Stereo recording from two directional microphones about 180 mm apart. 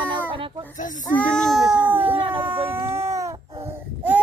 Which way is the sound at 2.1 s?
30° right (ahead or behind).